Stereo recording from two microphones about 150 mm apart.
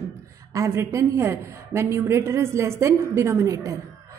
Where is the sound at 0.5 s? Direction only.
20° right (ahead or behind).